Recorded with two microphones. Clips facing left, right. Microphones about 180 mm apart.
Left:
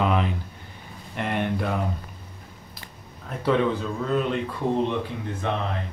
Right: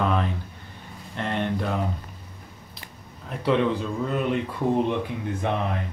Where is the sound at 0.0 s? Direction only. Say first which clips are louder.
Left 1 dB; 15° left (ahead or behind).